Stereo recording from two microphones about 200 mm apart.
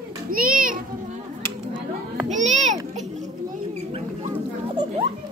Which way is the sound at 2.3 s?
35° right (ahead or behind).